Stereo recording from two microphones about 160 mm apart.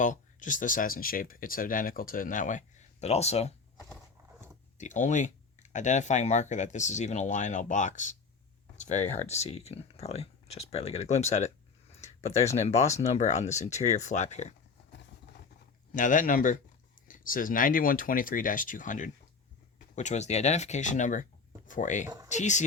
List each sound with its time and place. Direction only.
0.0 s speech: 50° left (ahead or behind)
4.8 s speech: 50° left (ahead or behind)
15.9 s speech: 55° left (ahead or behind)
22.0 s speech: 20° right (ahead or behind)
22.3 s speech: 50° left (ahead or behind)